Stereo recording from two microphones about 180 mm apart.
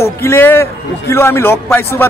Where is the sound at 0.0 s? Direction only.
15° left (ahead or behind).